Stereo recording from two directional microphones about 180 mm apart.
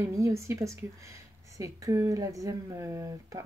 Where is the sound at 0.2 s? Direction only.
15° right (ahead or behind).